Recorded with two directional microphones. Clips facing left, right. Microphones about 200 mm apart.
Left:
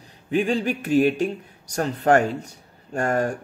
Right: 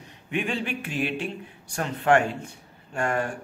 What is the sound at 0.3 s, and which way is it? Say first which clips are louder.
Speech: left 6 dB; 40° left (ahead or behind).